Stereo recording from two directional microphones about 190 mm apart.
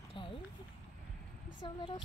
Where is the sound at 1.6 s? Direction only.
25° left (ahead or behind).